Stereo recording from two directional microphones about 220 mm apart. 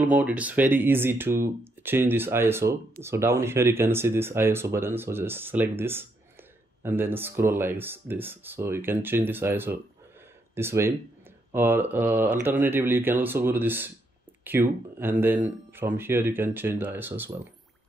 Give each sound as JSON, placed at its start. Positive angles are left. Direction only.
{"t": 0.0, "sound": "speech", "side_deg": -5}